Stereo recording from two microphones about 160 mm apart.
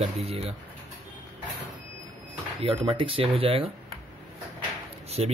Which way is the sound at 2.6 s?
35° right (ahead or behind).